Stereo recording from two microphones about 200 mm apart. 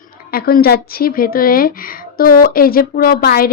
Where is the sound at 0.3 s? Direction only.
50° left (ahead or behind).